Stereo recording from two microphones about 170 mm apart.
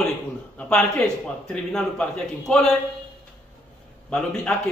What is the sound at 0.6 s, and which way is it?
A man's voice, 5° left (ahead or behind).